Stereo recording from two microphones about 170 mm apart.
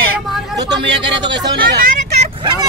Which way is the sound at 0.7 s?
90° right.